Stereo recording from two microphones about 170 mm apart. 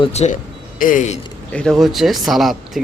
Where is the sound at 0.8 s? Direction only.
50° left (ahead or behind).